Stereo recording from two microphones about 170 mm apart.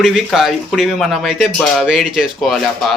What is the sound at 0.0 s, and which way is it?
Speech, centre (ahead or behind).